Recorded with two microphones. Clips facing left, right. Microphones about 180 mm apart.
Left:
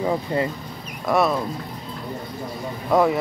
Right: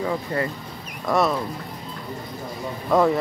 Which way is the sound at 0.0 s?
20° left (ahead or behind).